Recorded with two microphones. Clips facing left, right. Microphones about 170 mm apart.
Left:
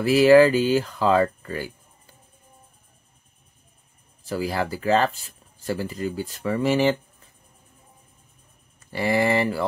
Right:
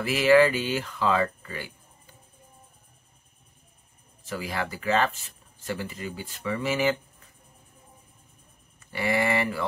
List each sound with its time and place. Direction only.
0.0 s speech: 40° left (ahead or behind)
4.2 s speech: 35° left (ahead or behind)
8.9 s speech: 35° left (ahead or behind)